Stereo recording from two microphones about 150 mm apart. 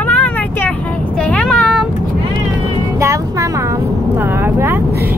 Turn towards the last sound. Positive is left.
turn(degrees=-15)  # may be behind; listen again after turning